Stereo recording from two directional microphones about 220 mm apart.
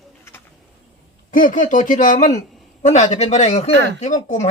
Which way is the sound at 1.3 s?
40° left (ahead or behind).